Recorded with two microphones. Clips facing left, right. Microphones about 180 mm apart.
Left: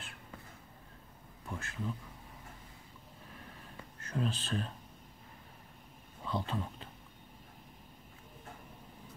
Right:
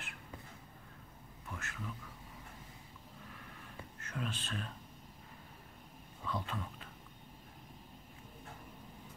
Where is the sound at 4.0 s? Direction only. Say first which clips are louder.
Left 6 dB; 30° left (ahead or behind).